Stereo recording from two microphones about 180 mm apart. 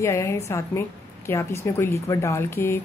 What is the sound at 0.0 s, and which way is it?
A woman's voice, 15° left (ahead or behind).